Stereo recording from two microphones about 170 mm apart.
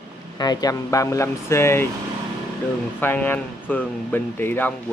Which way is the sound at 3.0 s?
10° left (ahead or behind).